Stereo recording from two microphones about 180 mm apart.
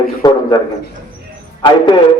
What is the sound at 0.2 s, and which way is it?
Speech, 25° left (ahead or behind).